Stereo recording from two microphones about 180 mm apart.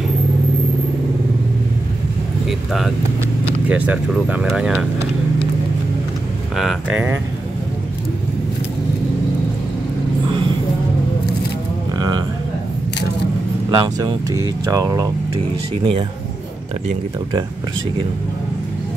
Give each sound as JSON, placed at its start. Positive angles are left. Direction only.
{"t": 3.6, "sound": "speech", "side_deg": -10}
{"t": 6.5, "sound": "speech", "side_deg": 0}
{"t": 13.7, "sound": "speech", "side_deg": -25}
{"t": 15.3, "sound": "speech", "side_deg": -30}